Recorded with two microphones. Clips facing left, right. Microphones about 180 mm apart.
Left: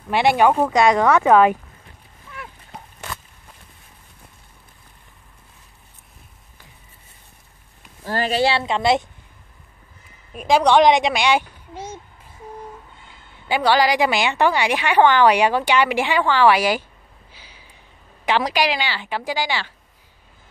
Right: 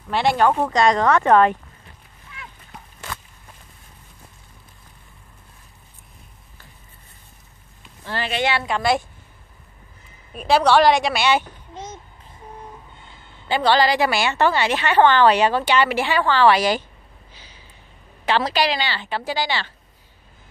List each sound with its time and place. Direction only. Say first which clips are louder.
0.4 s a woman's voice: left 1 dB; 10° left (ahead or behind)
8.0 s a woman's voice: left 4 dB; 40° left (ahead or behind); by 9.0 s 25° left (ahead or behind)
10.3 s a woman's voice: left 1 dB; 10° left (ahead or behind)
13.5 s a woman's voice: even; 10° left (ahead or behind)
17.3 s a sound: left 1 dB; 10° left (ahead or behind)
18.2 s a woman's voice: even; 15° left (ahead or behind)